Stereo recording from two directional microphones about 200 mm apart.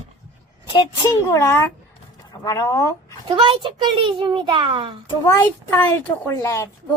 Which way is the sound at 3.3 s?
25° right (ahead or behind).